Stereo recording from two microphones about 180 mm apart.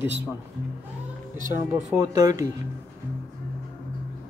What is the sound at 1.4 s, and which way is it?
Speech, 45° right (ahead or behind).